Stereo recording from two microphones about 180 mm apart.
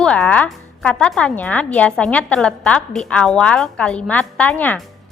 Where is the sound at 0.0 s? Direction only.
5° left (ahead or behind).